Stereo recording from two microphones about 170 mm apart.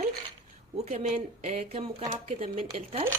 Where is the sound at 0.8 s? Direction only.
40° right (ahead or behind).